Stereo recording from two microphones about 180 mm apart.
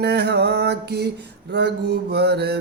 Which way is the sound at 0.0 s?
65° right (ahead or behind).